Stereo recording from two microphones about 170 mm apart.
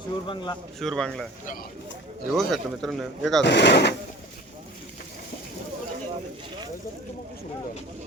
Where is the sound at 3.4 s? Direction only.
90° left.